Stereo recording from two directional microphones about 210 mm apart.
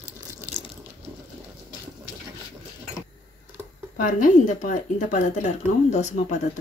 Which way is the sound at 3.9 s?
40° left (ahead or behind).